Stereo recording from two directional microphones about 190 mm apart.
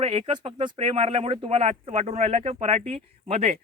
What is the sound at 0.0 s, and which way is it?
Speech, 30° right (ahead or behind).